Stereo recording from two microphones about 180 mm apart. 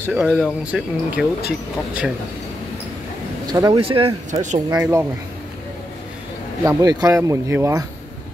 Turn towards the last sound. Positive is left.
turn(degrees=-15)  # may be behind; listen again after turning